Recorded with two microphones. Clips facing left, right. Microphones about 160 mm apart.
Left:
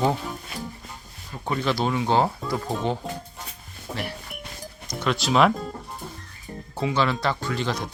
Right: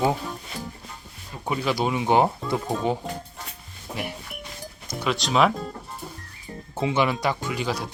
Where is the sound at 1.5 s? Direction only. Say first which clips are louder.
Even; 10° right (ahead or behind).